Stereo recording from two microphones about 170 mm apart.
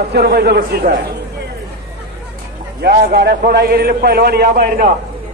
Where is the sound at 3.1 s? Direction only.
70° right (ahead or behind).